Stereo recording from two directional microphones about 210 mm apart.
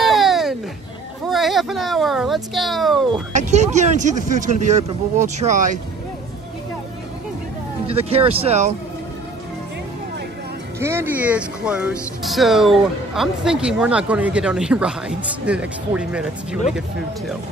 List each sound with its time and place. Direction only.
0.0 s a sound: centre (ahead or behind)
1.2 s speech: centre (ahead or behind)
3.1 s speech: 35° right (ahead or behind)
7.8 s speech: 30° right (ahead or behind)
10.8 s speech: 10° right (ahead or behind)